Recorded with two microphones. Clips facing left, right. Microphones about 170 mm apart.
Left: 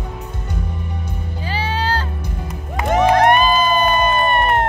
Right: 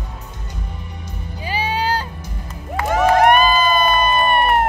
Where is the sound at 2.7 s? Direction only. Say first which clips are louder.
Left 1 dB; 20° left (ahead or behind).